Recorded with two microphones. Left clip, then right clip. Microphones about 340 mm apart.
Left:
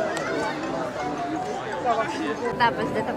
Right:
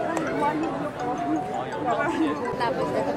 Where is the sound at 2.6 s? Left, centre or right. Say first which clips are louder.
Left 6 dB; left.